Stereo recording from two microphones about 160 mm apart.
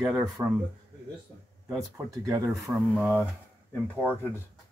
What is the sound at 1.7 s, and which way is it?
Speech, 20° right (ahead or behind).